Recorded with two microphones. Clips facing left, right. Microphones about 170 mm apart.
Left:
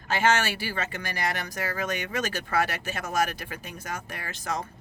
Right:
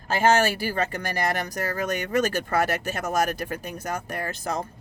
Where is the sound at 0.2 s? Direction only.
40° right (ahead or behind).